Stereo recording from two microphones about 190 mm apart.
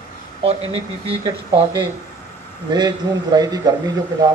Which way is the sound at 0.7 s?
30° right (ahead or behind).